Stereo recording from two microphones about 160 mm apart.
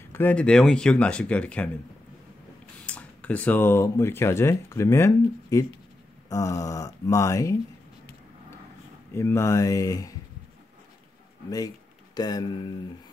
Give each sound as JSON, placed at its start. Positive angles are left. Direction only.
{"t": 0.1, "sound": "speech", "side_deg": 10}
{"t": 2.8, "sound": "speech", "side_deg": 10}
{"t": 9.1, "sound": "speech", "side_deg": 15}
{"t": 12.2, "sound": "speech", "side_deg": 25}